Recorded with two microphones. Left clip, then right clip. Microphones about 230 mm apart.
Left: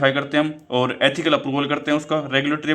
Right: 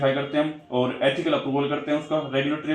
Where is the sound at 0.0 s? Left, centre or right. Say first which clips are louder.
Left 4 dB; left.